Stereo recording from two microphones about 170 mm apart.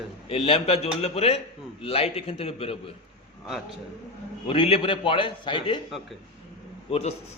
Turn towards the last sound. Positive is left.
turn(degrees=35)  # may be behind; listen again after turning